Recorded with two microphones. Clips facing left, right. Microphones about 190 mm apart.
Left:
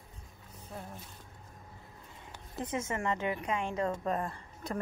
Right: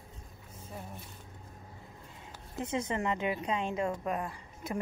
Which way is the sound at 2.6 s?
20° right (ahead or behind).